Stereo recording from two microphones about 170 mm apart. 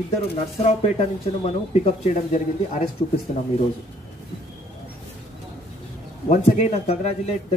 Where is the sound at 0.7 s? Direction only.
40° left (ahead or behind).